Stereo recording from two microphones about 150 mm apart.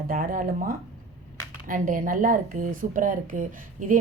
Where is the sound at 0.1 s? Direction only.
65° right (ahead or behind).